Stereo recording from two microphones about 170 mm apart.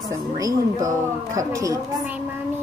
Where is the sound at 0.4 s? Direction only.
20° right (ahead or behind).